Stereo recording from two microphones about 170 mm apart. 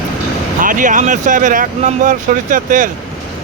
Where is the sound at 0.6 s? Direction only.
50° right (ahead or behind).